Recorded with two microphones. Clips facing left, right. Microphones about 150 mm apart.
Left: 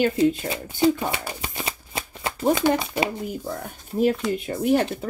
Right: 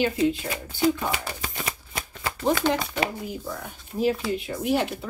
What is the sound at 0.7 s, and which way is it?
Speech, 25° left (ahead or behind).